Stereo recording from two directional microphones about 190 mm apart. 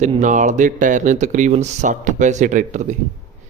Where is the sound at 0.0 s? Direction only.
40° right (ahead or behind).